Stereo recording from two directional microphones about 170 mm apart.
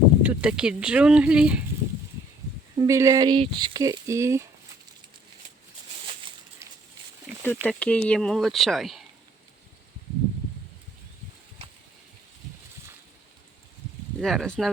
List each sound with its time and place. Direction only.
0.2 s speech: 10° right (ahead or behind)
2.7 s speech: 20° right (ahead or behind)
7.4 s speech: 10° left (ahead or behind)
14.2 s speech: centre (ahead or behind)